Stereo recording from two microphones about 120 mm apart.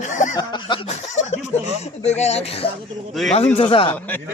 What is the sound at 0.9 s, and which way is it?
A man's voice, 75° left (ahead or behind).